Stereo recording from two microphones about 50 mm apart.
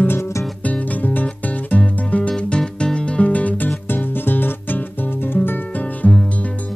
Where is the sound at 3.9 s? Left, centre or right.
Left.